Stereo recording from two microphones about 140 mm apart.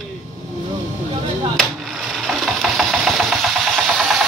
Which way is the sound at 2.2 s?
Centre (ahead or behind).